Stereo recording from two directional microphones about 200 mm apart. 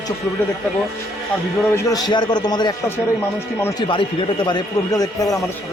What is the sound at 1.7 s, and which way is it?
A man's voice, 15° left (ahead or behind).